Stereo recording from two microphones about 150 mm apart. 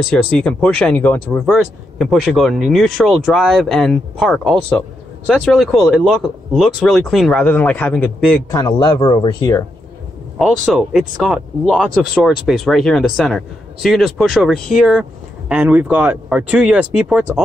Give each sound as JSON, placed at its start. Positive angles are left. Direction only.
{"t": 0.1, "sound": "speech", "side_deg": 10}
{"t": 1.4, "sound": "speech", "side_deg": -5}
{"t": 8.5, "sound": "speech", "side_deg": 25}
{"t": 10.4, "sound": "speech", "side_deg": 0}